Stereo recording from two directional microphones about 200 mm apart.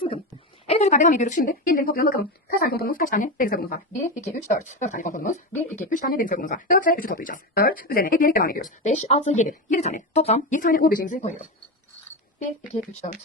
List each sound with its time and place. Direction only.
0.7 s speech: 35° left (ahead or behind)
4.4 s a woman's voice: 35° left (ahead or behind)
12.7 s a woman's voice: 35° left (ahead or behind)